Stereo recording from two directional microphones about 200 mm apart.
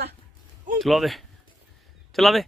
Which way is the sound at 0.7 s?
Centre (ahead or behind).